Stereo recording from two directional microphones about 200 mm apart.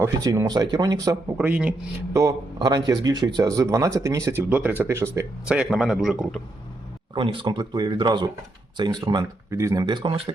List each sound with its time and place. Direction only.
0.0 s speech: 15° right (ahead or behind)
1.4 s a man's voice: 5° right (ahead or behind)
2.1 s speech: 20° right (ahead or behind); by 6.4 s centre (ahead or behind)
7.1 s speech: 25° right (ahead or behind)